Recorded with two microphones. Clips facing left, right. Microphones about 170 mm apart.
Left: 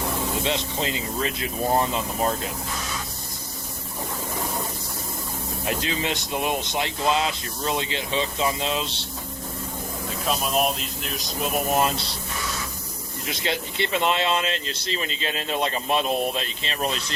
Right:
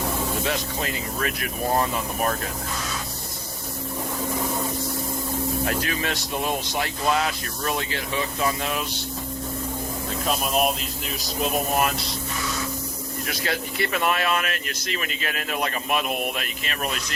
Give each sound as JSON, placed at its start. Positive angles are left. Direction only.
{"t": 0.4, "sound": "speech", "side_deg": 20}
{"t": 5.6, "sound": "speech", "side_deg": 20}
{"t": 10.2, "sound": "speech", "side_deg": 0}
{"t": 11.7, "sound": "speech", "side_deg": 25}
{"t": 13.2, "sound": "speech", "side_deg": 20}